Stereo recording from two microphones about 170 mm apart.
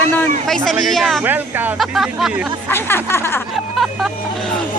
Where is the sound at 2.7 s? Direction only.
15° left (ahead or behind).